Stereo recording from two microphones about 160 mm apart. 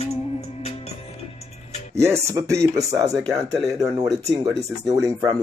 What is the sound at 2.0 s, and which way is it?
Speech, 20° right (ahead or behind).